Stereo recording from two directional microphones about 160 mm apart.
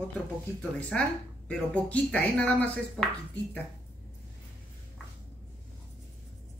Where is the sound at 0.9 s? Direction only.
5° left (ahead or behind).